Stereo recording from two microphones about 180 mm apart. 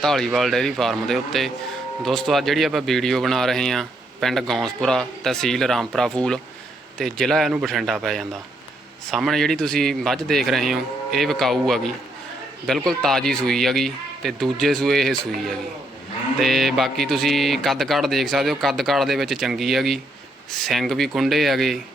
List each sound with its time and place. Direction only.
0.0 s speech: centre (ahead or behind)